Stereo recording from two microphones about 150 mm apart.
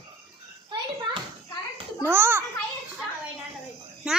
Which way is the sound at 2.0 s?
15° right (ahead or behind).